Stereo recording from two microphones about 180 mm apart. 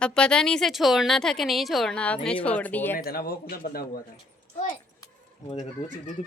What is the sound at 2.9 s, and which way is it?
Speech, 55° left (ahead or behind).